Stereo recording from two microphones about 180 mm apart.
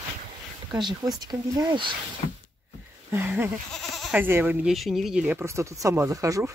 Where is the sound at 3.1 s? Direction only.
10° right (ahead or behind).